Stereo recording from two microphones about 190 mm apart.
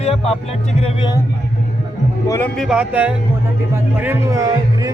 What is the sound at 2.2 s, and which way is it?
Speech, 15° left (ahead or behind).